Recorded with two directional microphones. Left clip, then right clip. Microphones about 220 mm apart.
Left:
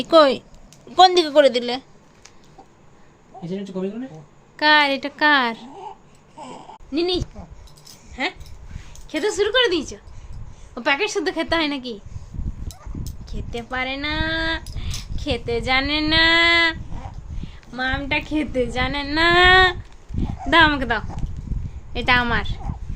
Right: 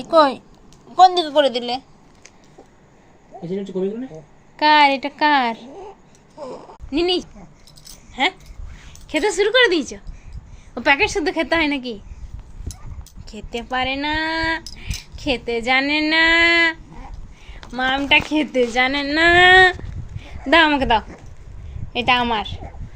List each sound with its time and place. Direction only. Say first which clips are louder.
0.0 s a woman's voice: left 1 dB; 25° left (ahead or behind)
4.5 s a woman's voice: right 3 dB; centre (ahead or behind)
6.9 s a woman's voice: right 3 dB; 20° right (ahead or behind)
9.0 s a woman's voice: right 3 dB; 25° right (ahead or behind)
13.2 s speech: right 4 dB; 15° right (ahead or behind)
17.5 s a woman's voice: right 4 dB; 25° right (ahead or behind)
19.0 s speech: right 2 dB; 15° right (ahead or behind)